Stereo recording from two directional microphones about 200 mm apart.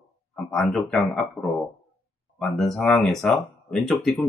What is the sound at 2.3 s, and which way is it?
Speech, centre (ahead or behind).